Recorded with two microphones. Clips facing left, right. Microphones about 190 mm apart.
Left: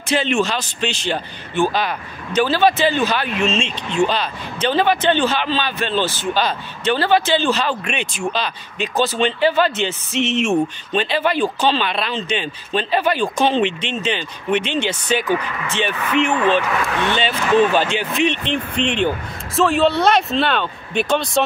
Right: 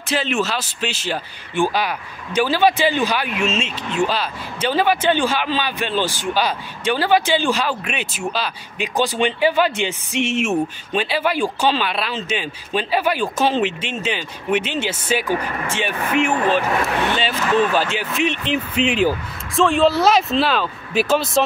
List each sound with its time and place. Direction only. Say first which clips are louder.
0.1 s speech: left 3 dB; 5° right (ahead or behind)
15.3 s speech: left 1 dB; 40° right (ahead or behind)
17.1 s speech: left 2 dB; centre (ahead or behind)